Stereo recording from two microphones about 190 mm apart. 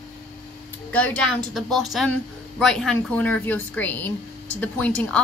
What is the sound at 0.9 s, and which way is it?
A woman's voice, 5° left (ahead or behind).